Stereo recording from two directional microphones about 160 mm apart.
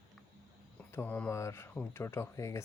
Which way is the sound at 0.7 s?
10° left (ahead or behind).